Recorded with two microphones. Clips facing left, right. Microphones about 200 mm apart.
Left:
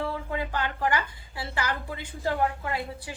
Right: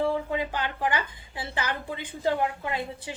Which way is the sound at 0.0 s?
20° right (ahead or behind).